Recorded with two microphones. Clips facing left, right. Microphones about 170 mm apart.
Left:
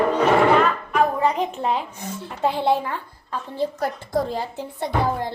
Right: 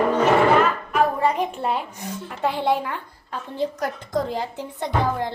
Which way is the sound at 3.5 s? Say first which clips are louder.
Left 1 dB; 15° right (ahead or behind).